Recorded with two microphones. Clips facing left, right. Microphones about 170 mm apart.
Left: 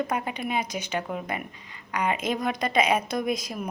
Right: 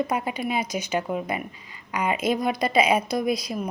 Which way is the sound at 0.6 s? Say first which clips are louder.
Right 4 dB; 40° right (ahead or behind).